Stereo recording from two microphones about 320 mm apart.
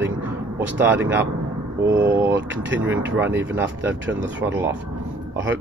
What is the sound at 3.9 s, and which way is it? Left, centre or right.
Speech, right.